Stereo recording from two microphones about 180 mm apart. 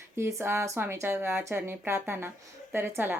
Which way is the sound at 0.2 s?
15° right (ahead or behind).